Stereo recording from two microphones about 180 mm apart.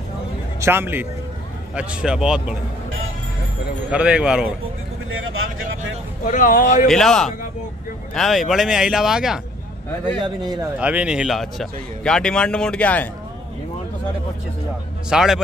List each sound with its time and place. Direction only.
0.6 s a man's voice: 15° right (ahead or behind)
3.9 s a man's voice: 5° right (ahead or behind)
6.2 s speech: 45° left (ahead or behind)
6.9 s a man's voice: centre (ahead or behind)
10.2 s speech: 20° right (ahead or behind)
10.8 s a man's voice: 5° right (ahead or behind)
15.0 s a man's voice: 5° right (ahead or behind)